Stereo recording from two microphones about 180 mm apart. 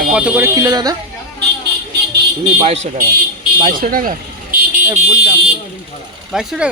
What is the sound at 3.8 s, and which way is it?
Speech, 50° right (ahead or behind).